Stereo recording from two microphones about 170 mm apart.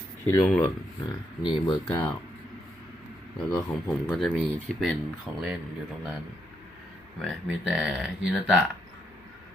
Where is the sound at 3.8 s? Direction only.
Centre (ahead or behind).